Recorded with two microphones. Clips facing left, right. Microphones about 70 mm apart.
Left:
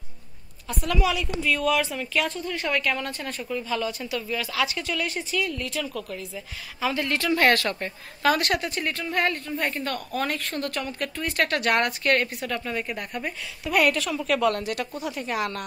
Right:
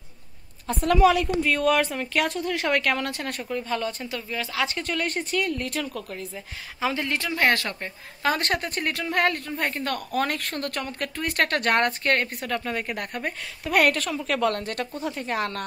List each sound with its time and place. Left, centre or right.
0.7 s a woman's voice: right
2.2 s speech: right
3.4 s speech: right
4.0 s a woman's voice: right
4.6 s a woman's voice: right
5.9 s a woman's voice: right
8.4 s a woman's voice: right
8.9 s a woman's voice: right
12.3 s a woman's voice: right
14.1 s speech: right